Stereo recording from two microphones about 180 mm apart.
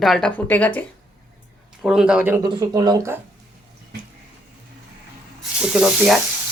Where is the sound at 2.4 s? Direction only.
20° right (ahead or behind).